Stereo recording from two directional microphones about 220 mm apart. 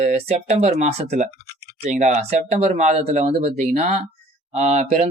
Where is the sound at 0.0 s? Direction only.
30° right (ahead or behind).